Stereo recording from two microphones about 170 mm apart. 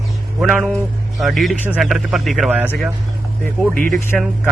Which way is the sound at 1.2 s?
Centre (ahead or behind).